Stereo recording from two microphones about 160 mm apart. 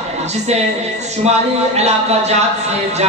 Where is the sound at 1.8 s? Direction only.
40° right (ahead or behind).